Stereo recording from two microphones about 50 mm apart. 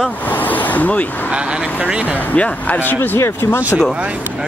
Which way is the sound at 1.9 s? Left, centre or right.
Right.